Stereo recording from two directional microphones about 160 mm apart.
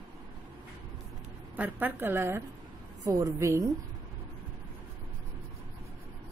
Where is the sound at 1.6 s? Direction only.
10° right (ahead or behind).